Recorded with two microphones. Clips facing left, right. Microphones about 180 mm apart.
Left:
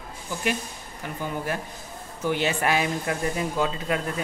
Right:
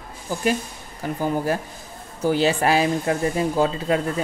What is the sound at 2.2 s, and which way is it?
Speech, 35° right (ahead or behind).